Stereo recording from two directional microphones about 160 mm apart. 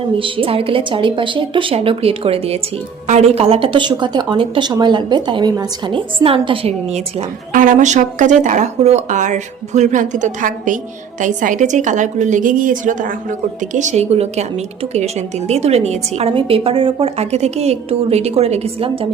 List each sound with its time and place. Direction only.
0.2 s speech: 35° right (ahead or behind)
7.5 s speech: 55° right (ahead or behind); by 19.0 s 40° right (ahead or behind)